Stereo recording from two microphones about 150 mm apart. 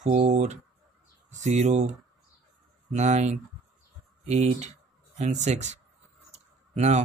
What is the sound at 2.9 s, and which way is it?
Speech, 50° right (ahead or behind).